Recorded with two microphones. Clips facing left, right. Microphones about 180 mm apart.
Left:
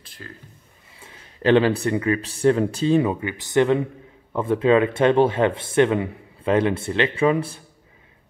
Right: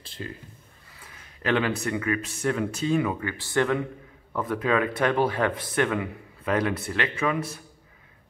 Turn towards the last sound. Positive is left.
turn(degrees=30)  # may be behind; listen again after turning